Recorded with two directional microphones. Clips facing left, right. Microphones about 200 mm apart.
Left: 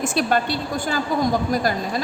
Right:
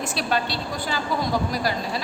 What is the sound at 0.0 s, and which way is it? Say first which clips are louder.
A woman's voice: left 5 dB; 50° left (ahead or behind).